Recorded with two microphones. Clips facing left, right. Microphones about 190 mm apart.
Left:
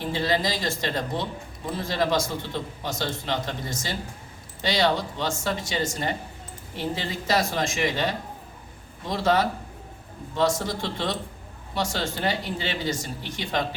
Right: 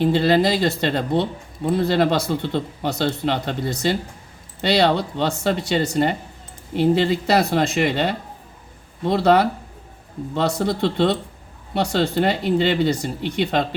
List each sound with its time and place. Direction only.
0.0 s speech: 65° right (ahead or behind)